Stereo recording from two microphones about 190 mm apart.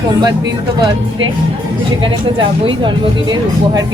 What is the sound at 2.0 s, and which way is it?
Speech, 25° right (ahead or behind).